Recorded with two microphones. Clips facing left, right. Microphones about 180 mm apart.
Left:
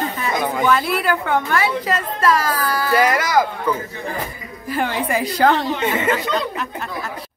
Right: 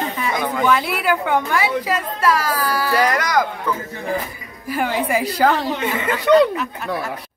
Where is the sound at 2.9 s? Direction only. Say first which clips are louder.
Left 2 dB; 5° left (ahead or behind).